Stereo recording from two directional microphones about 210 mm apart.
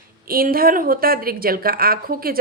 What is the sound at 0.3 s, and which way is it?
Speech, 45° right (ahead or behind).